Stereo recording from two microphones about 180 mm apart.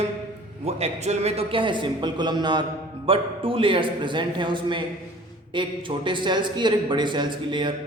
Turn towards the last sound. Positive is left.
turn(degrees=-25)  # may be behind; listen again after turning